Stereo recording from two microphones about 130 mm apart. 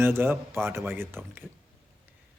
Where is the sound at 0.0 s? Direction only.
20° right (ahead or behind).